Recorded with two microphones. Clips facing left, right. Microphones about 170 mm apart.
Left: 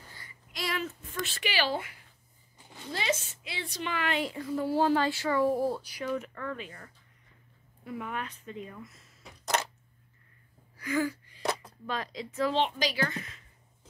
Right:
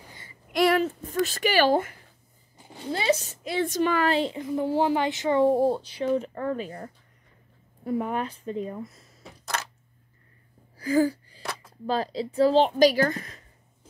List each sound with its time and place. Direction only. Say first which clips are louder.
0.5 s a sound: right 13 dB; 60° right (ahead or behind)
0.8 s a woman's voice: right 10 dB; 40° right (ahead or behind)
2.9 s a woman's voice: right 7 dB; 35° right (ahead or behind)
4.2 s a woman's voice: right 5 dB; 20° right (ahead or behind)
10.8 s a sound: right 8 dB; 35° right (ahead or behind)
11.8 s a woman's voice: right 11 dB; 35° right (ahead or behind)